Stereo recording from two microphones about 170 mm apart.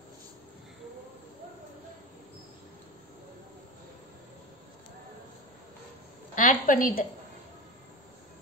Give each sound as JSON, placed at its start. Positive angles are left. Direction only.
{"t": 6.3, "sound": "a woman's voice", "side_deg": 50}